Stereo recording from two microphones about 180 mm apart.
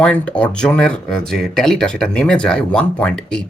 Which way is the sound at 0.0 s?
5° left (ahead or behind).